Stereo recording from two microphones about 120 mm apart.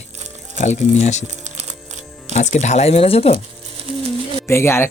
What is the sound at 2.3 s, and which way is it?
Speech, 85° left.